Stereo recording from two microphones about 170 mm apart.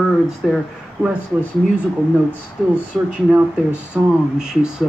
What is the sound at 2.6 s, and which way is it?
Speech, centre (ahead or behind).